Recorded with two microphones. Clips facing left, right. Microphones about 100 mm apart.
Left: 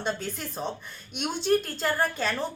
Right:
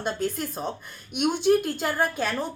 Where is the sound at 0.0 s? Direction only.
5° right (ahead or behind).